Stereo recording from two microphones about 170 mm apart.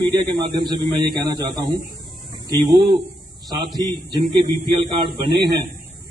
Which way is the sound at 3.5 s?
25° right (ahead or behind).